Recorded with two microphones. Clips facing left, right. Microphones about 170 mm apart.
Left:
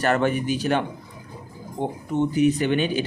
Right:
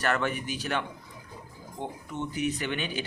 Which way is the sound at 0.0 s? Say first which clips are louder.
Left 7 dB; 30° left (ahead or behind).